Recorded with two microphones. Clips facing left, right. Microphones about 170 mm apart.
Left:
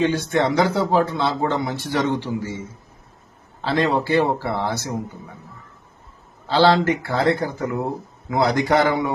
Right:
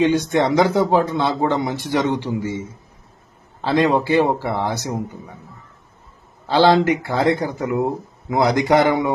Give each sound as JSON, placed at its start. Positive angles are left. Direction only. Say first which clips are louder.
{"t": 0.0, "sound": "speech", "louder": "right 3 dB", "side_deg": -20}
{"t": 3.6, "sound": "speech", "louder": "right 3 dB", "side_deg": -15}
{"t": 6.5, "sound": "speech", "louder": "right 2 dB", "side_deg": -15}